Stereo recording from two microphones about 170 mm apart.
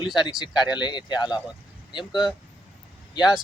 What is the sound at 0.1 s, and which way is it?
Speech, centre (ahead or behind).